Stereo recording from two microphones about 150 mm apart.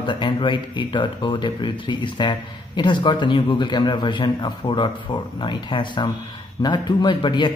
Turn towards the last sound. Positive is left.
turn(degrees=30)  # may be behind; listen again after turning